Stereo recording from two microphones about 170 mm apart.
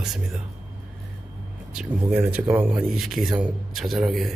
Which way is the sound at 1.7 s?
5° right (ahead or behind).